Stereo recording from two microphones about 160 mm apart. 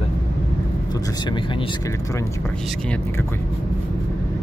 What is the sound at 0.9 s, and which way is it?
Speech, 25° left (ahead or behind).